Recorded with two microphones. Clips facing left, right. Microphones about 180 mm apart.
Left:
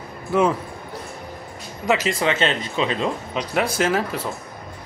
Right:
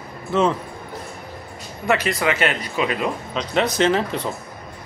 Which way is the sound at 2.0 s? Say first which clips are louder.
Even; 25° left (ahead or behind).